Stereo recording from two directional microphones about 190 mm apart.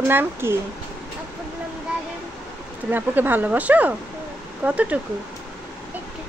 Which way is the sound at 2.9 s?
10° right (ahead or behind).